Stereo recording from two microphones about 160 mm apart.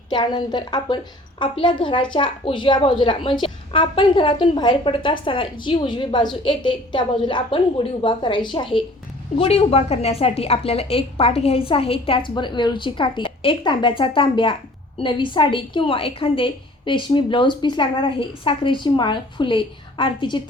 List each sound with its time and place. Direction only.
0.1 s a woman's voice: 25° left (ahead or behind)